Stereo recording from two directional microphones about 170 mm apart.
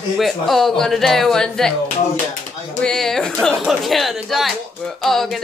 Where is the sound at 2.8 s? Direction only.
5° left (ahead or behind).